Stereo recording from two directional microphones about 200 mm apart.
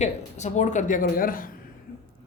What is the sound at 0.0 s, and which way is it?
Speech, 35° left (ahead or behind).